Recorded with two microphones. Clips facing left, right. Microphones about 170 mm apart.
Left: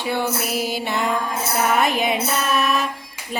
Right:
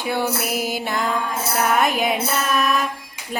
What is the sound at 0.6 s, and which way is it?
Music, 50° right (ahead or behind).